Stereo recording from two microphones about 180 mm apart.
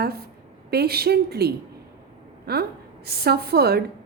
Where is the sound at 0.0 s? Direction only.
60° right (ahead or behind).